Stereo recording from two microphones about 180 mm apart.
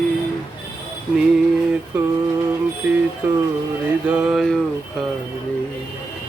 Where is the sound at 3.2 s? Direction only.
10° right (ahead or behind).